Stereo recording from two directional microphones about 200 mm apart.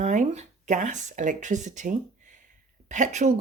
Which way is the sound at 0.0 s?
35° right (ahead or behind).